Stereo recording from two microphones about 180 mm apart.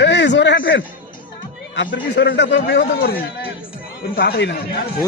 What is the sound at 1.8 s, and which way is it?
A man's voice, 75° left (ahead or behind).